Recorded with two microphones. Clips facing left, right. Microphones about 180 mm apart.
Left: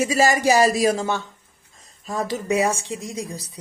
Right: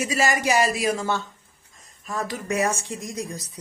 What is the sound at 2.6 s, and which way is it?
Speech, 10° left (ahead or behind).